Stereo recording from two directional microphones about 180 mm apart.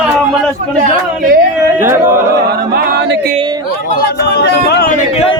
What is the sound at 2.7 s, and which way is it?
A capella, 60° right (ahead or behind).